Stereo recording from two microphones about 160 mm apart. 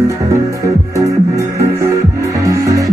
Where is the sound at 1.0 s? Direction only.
20° right (ahead or behind).